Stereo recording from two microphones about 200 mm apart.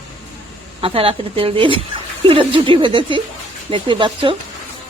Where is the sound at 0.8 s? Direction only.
25° right (ahead or behind).